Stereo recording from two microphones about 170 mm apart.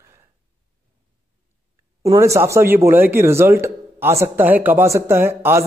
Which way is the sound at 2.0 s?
20° right (ahead or behind).